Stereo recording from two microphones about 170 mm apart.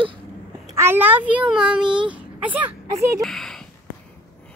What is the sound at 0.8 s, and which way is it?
A child's voice, 10° right (ahead or behind).